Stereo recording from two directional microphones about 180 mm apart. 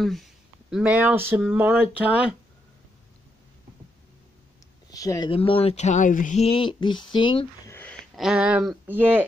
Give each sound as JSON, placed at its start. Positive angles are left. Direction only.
{"t": 0.0, "sound": "speech", "side_deg": 0}
{"t": 4.9, "sound": "speech", "side_deg": 20}
{"t": 5.3, "sound": "speech", "side_deg": 30}
{"t": 7.7, "sound": "a sound", "side_deg": 10}
{"t": 8.2, "sound": "speech", "side_deg": -5}